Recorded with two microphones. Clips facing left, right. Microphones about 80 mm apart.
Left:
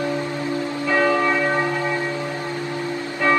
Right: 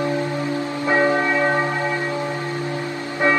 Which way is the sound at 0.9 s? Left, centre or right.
Right.